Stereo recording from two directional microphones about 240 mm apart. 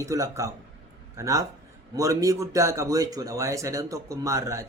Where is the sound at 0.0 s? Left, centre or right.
Centre.